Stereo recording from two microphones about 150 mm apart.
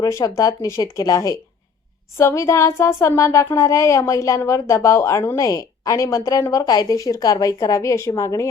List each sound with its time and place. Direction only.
0.0 s speech: 20° left (ahead or behind)